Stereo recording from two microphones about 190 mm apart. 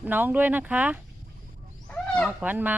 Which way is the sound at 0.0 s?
10° right (ahead or behind).